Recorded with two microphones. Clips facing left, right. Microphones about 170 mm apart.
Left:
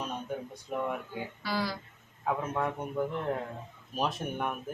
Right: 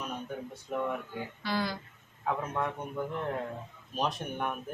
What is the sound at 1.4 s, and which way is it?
A man's voice, 5° left (ahead or behind).